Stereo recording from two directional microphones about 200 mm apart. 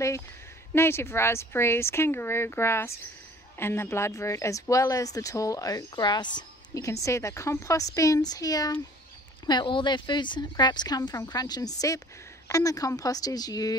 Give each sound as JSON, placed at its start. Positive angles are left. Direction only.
{"t": 0.7, "sound": "speech", "side_deg": 10}